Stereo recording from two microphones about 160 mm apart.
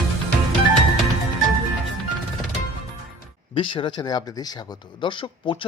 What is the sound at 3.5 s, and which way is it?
A man's voice, 30° left (ahead or behind).